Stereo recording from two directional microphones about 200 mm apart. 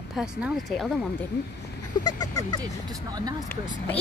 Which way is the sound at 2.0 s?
20° left (ahead or behind).